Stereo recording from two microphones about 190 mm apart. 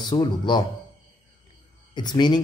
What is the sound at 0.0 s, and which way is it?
Speech, 25° left (ahead or behind).